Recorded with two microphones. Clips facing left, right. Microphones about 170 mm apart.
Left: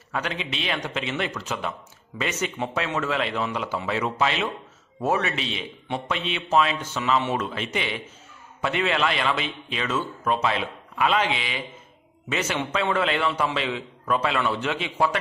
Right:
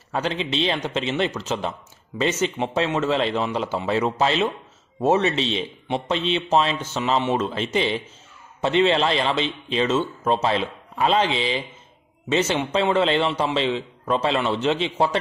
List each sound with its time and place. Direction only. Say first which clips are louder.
0.1 s a man's voice: right 5 dB; 30° right (ahead or behind)